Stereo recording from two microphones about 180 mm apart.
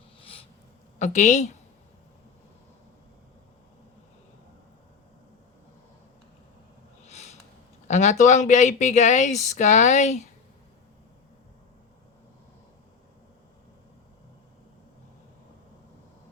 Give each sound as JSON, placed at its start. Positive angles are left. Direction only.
{"t": 0.2, "sound": "owl", "side_deg": 30}
{"t": 0.9, "sound": "speech", "side_deg": 40}
{"t": 7.0, "sound": "a sound", "side_deg": 40}
{"t": 7.9, "sound": "speech", "side_deg": 40}